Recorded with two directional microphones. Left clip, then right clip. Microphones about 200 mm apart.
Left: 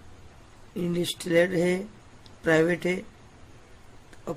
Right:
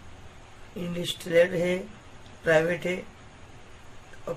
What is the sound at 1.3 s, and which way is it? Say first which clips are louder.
Speech: right 1 dB; 55° left (ahead or behind).